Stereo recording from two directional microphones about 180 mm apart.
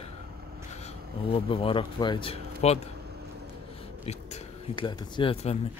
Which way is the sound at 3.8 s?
35° left (ahead or behind).